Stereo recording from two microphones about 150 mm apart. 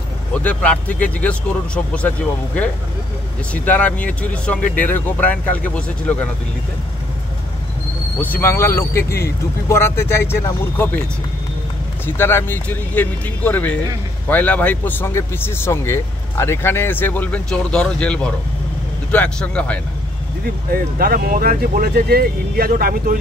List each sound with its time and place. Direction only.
0.3 s a man's voice: 10° left (ahead or behind)
8.2 s a man's voice: 15° left (ahead or behind)
12.2 s a man's voice: 15° left (ahead or behind)
20.7 s speech: 75° right (ahead or behind)